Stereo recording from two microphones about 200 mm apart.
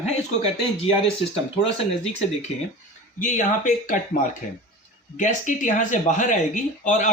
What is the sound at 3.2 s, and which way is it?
Speech, 40° left (ahead or behind).